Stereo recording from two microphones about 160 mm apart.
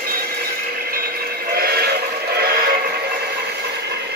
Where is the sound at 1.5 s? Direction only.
80° right.